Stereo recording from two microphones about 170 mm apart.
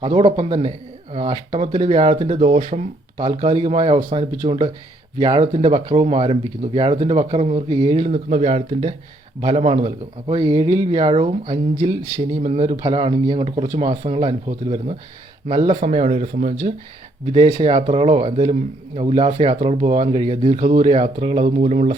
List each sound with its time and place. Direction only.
0.0 s speech: 30° right (ahead or behind)
8.0 s speech: 40° right (ahead or behind)
10.3 s speech: 25° right (ahead or behind)
15.7 s speech: 45° right (ahead or behind)
17.3 s speech: 30° right (ahead or behind)